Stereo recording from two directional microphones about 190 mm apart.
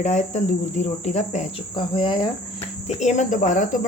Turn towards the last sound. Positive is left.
turn(degrees=40)  # may be behind; listen again after turning